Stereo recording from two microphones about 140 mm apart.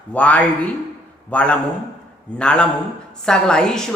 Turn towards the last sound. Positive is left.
turn(degrees=5)  # may be behind; listen again after turning